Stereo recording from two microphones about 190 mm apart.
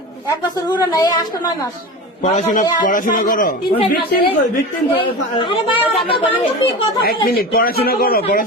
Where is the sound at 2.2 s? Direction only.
35° left (ahead or behind).